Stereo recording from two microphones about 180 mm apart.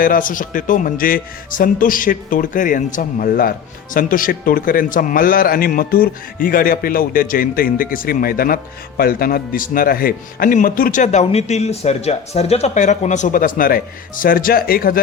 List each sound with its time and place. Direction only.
0.0 s a man's voice: 50° left (ahead or behind)